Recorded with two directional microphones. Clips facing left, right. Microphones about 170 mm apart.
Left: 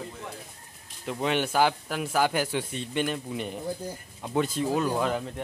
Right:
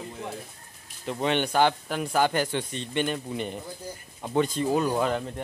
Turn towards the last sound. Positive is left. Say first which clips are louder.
# right 2 dB
turn(degrees=0)  # may be behind; listen again after turning